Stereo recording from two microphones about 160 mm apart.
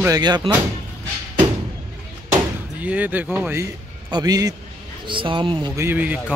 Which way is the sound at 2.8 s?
10° right (ahead or behind).